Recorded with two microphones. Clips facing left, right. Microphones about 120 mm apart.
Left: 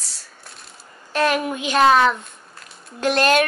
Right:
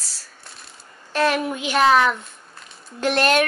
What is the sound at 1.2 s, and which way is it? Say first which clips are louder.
Speech: even; 15° left (ahead or behind).